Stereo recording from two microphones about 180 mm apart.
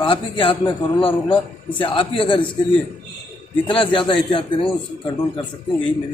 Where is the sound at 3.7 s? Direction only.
30° left (ahead or behind).